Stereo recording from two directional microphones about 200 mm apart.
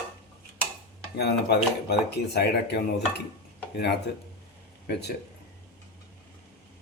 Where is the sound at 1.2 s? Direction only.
55° left (ahead or behind).